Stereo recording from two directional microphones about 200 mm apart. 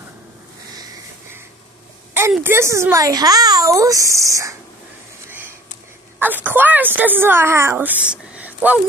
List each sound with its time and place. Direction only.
0.7 s a sound: 15° right (ahead or behind)
2.3 s speech: 10° right (ahead or behind)
6.1 s a woman's voice: 10° right (ahead or behind)